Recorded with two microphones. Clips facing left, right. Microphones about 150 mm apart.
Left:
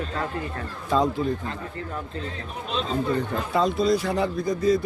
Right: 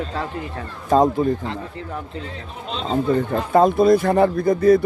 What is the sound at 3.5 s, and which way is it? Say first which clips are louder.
Speech: right 8 dB; 50° right (ahead or behind).